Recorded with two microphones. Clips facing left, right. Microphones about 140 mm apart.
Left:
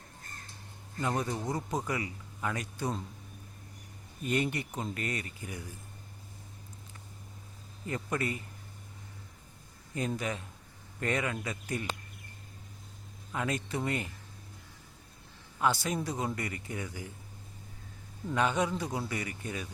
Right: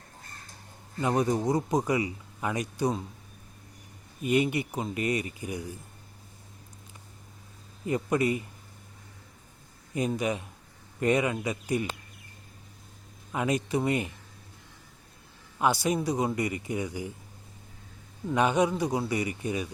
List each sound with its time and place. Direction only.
1.0 s speech: 15° right (ahead or behind)
4.2 s speech: 10° right (ahead or behind)
7.9 s speech: 15° right (ahead or behind)
9.9 s speech: 15° right (ahead or behind)
13.3 s speech: 15° right (ahead or behind)
15.6 s speech: 15° right (ahead or behind)
18.3 s speech: 15° right (ahead or behind)